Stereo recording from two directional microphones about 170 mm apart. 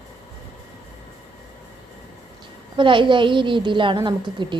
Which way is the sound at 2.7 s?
30° right (ahead or behind).